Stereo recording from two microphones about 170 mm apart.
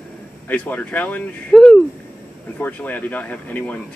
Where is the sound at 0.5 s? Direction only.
10° left (ahead or behind).